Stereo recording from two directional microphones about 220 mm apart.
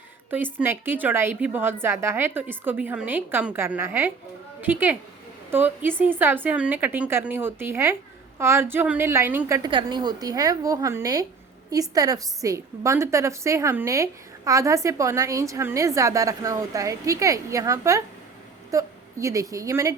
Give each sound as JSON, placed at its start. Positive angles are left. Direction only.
{"t": 0.6, "sound": "a woman's voice", "side_deg": -10}
{"t": 9.6, "sound": "a woman's voice", "side_deg": -20}